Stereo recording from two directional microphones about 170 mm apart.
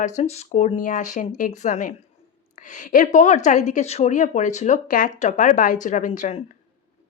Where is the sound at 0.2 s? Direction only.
40° left (ahead or behind).